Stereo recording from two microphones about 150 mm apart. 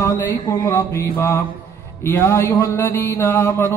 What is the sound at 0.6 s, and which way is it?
Mantra, 20° left (ahead or behind).